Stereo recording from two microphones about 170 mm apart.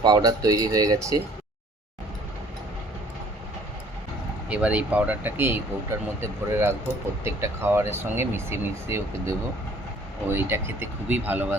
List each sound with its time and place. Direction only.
0.0 s speech: 25° right (ahead or behind)
4.4 s speech: 5° right (ahead or behind)